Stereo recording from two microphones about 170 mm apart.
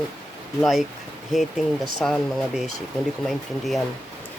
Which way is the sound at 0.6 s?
Centre (ahead or behind).